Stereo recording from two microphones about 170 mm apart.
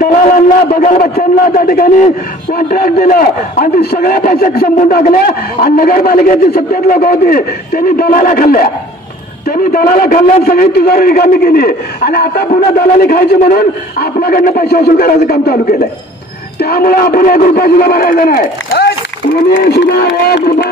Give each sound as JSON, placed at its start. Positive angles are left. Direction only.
{"t": 0.0, "sound": "a man's voice", "side_deg": 55}
{"t": 19.5, "sound": "a man's voice", "side_deg": 75}